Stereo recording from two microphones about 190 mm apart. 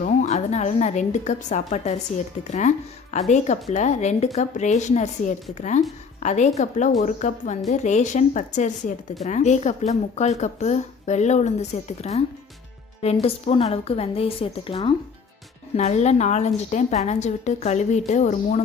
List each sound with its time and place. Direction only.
0.0 s a woman's voice: 40° left (ahead or behind)
13.2 s a woman's voice: 30° left (ahead or behind)